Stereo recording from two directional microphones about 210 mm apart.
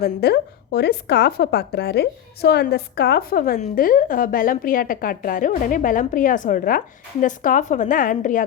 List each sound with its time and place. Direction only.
0.0 s a woman's voice: 50° left (ahead or behind)